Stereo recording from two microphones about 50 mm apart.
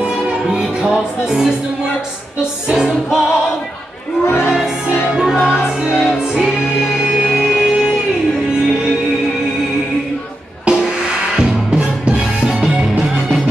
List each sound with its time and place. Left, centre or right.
0.5 s music: centre
2.7 s music: centre
5.1 s music: centre
10.6 s music: centre
12.6 s music: centre